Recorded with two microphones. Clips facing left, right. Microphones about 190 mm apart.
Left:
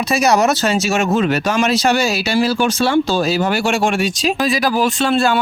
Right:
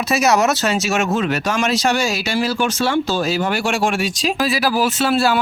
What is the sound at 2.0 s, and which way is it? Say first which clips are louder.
Speech: left 3 dB; 35° left (ahead or behind).